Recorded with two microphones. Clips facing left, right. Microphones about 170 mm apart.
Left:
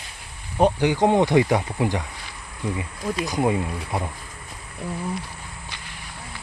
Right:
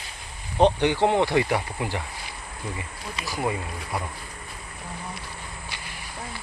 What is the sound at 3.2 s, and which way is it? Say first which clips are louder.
Speech: left 5 dB; 20° left (ahead or behind).